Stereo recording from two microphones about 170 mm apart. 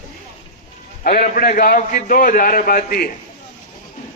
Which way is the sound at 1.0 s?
55° left (ahead or behind).